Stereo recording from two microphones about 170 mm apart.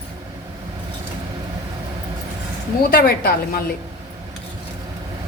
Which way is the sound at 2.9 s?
60° left (ahead or behind).